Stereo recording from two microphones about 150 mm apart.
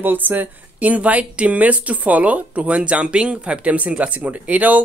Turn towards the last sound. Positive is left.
turn(degrees=-10)  # may be behind; listen again after turning